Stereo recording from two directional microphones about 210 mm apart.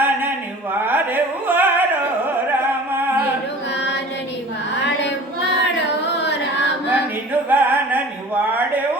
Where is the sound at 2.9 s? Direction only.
10° right (ahead or behind).